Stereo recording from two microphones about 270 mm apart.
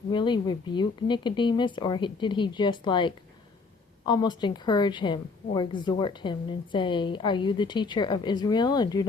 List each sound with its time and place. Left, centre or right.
0.1 s a woman's voice: centre